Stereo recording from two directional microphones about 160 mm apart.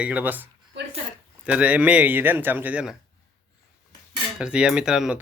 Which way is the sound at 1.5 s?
10° right (ahead or behind).